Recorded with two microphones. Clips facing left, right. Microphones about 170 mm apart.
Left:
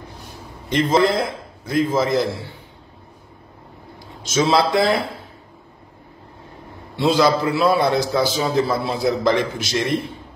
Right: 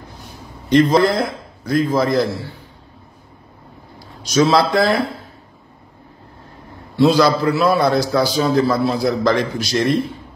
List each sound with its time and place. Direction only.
0.7 s a man's voice: 20° left (ahead or behind)
4.2 s a man's voice: 25° left (ahead or behind)
7.1 s a man's voice: 25° left (ahead or behind)